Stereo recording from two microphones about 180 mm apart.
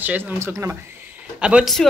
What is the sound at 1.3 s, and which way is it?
Speech, 5° right (ahead or behind).